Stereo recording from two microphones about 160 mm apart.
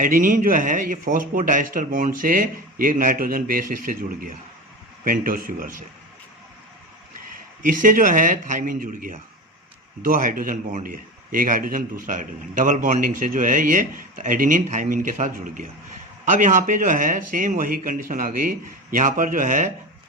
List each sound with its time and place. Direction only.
0.0 s a man's voice: 55° right (ahead or behind)
7.6 s a man's voice: 55° right (ahead or behind)